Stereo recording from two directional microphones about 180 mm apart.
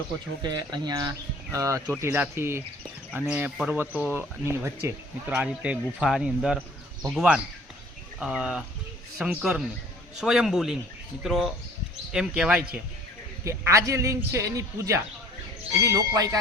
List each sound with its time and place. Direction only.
0.5 s a man's voice: 25° right (ahead or behind); by 12.5 s 5° right (ahead or behind)
13.4 s speech: 15° right (ahead or behind)